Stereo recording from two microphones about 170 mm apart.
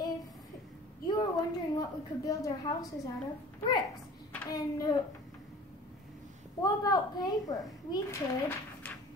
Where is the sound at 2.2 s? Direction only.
20° left (ahead or behind).